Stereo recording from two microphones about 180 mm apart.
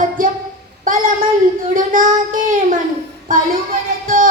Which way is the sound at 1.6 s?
50° right (ahead or behind).